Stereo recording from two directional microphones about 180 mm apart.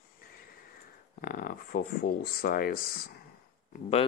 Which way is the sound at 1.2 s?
55° left (ahead or behind).